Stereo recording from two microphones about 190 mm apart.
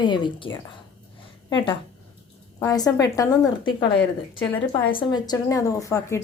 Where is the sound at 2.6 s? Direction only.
20° left (ahead or behind).